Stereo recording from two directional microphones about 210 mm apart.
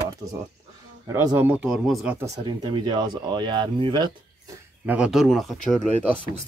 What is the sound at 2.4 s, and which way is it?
Speech, 20° right (ahead or behind).